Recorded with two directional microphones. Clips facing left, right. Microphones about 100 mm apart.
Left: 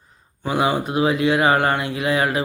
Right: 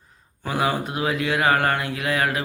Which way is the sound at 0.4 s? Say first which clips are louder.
Left 3 dB; 15° left (ahead or behind).